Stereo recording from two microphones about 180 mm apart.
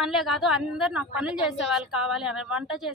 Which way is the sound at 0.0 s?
Centre (ahead or behind).